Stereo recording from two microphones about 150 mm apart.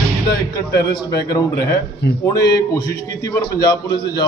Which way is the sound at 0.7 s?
90° left.